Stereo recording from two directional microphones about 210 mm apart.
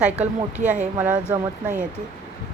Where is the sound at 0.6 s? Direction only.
35° right (ahead or behind).